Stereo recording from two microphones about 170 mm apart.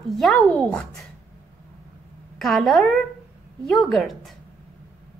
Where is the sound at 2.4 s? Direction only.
Centre (ahead or behind).